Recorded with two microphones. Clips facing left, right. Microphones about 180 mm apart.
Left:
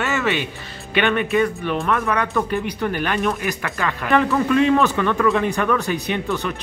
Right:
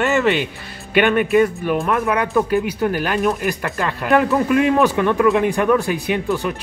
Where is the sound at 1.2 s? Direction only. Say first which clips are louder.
Right 4 dB; 5° right (ahead or behind).